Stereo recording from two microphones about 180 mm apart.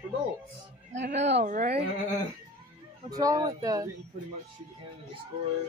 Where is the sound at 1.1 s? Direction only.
40° right (ahead or behind).